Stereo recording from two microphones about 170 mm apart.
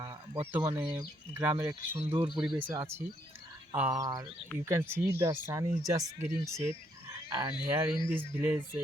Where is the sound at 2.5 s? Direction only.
10° right (ahead or behind).